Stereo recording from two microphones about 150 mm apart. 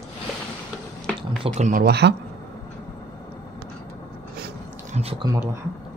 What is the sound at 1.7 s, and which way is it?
Speech, 80° right.